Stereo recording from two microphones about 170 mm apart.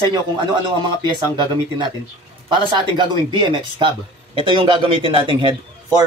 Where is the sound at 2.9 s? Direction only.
30° right (ahead or behind).